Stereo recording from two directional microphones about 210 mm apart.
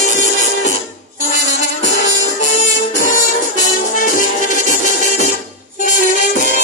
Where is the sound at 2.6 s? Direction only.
40° left (ahead or behind).